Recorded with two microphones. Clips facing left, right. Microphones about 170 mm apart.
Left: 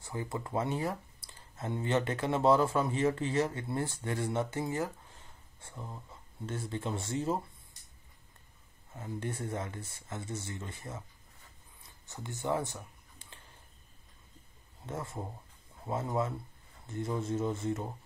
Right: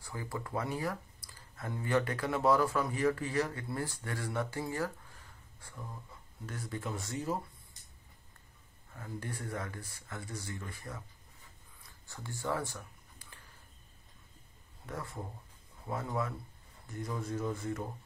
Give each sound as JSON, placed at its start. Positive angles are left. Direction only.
{"t": 0.0, "sound": "speech", "side_deg": 25}
{"t": 8.9, "sound": "speech", "side_deg": 20}
{"t": 11.8, "sound": "a sound", "side_deg": 20}
{"t": 14.9, "sound": "speech", "side_deg": 25}